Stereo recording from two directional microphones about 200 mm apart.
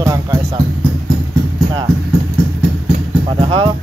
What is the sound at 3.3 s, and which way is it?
Speech, 25° right (ahead or behind).